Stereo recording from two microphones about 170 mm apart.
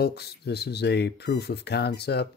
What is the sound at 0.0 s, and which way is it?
Speech, 70° left (ahead or behind).